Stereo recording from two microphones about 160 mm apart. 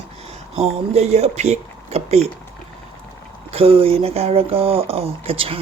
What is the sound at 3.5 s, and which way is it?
Speech, 35° right (ahead or behind).